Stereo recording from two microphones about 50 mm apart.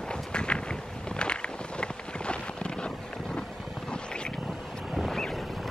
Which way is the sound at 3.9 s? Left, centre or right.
Centre.